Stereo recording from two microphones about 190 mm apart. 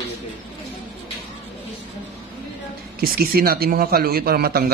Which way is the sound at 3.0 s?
50° right (ahead or behind).